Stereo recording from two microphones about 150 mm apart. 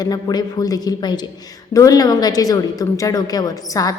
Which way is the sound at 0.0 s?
25° left (ahead or behind).